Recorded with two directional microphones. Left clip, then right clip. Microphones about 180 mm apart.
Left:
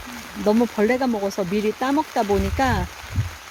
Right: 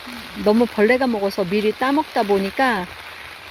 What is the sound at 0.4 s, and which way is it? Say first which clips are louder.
Speech: right 3 dB; 5° right (ahead or behind).